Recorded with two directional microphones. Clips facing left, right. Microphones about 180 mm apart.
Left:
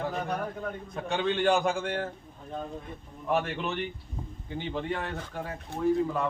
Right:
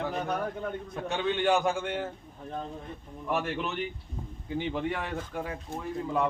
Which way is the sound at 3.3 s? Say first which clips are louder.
Left 2 dB; 5° right (ahead or behind).